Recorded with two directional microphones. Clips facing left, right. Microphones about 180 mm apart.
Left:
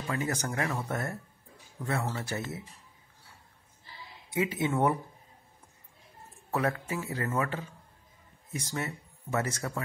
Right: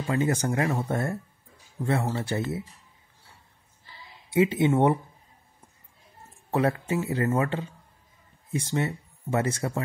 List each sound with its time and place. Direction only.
0.0 s speech: 25° right (ahead or behind)
4.3 s speech: 30° right (ahead or behind)
6.5 s speech: 30° right (ahead or behind)
8.7 s speech: 25° right (ahead or behind)